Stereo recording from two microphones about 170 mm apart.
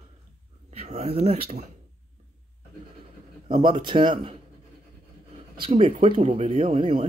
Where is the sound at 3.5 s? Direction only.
30° right (ahead or behind).